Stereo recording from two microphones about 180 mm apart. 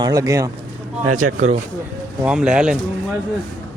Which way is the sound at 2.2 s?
5° right (ahead or behind).